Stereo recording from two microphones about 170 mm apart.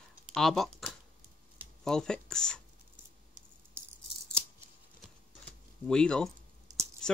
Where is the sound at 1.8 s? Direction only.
5° left (ahead or behind).